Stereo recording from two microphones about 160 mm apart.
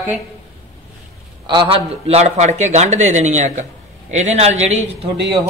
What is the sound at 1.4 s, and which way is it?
Speech, 30° right (ahead or behind).